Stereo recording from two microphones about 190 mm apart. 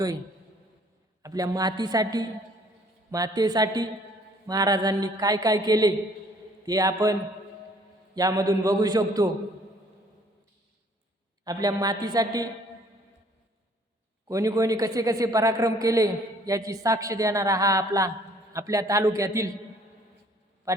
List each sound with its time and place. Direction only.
1.2 s a man's voice: 20° right (ahead or behind)
11.4 s a man's voice: 20° right (ahead or behind)
14.3 s a man's voice: 15° right (ahead or behind)
20.7 s mantra: 15° right (ahead or behind)